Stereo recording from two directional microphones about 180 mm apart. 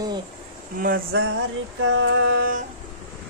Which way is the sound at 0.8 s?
55° right (ahead or behind).